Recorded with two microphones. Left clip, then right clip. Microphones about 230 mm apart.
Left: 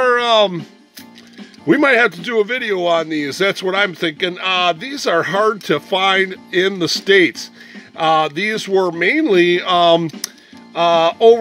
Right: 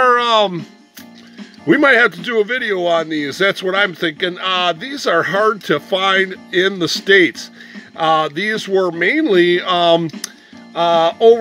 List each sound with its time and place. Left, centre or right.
0.0 s music: centre
1.7 s speech: centre